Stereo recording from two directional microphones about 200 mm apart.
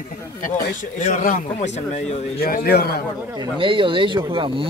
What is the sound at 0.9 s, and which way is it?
A man's voice, 40° left (ahead or behind).